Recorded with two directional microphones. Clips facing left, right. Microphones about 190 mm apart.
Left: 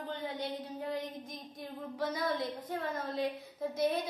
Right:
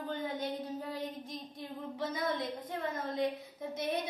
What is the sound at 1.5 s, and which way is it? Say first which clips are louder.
Child singing: left 2 dB; 25° right (ahead or behind).